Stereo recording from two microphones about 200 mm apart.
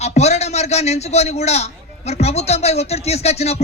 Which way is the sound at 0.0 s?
35° left (ahead or behind).